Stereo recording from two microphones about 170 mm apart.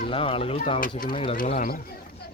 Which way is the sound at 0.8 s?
55° left (ahead or behind).